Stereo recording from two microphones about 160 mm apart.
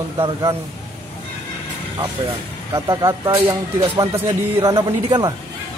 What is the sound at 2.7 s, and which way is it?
Speech, 25° right (ahead or behind).